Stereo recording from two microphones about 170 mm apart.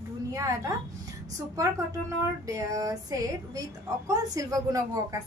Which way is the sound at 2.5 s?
20° right (ahead or behind).